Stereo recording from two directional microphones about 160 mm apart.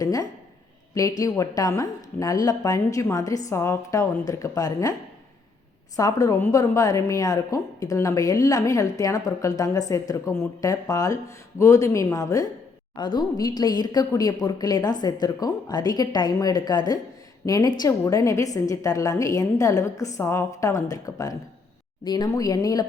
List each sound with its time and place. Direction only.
0.0 s a sound: 20° left (ahead or behind)
0.9 s a woman's voice: 20° left (ahead or behind)
6.0 s a woman's voice: 20° left (ahead or behind)